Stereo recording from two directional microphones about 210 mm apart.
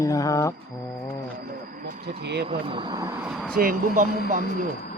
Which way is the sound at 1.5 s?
40° right (ahead or behind).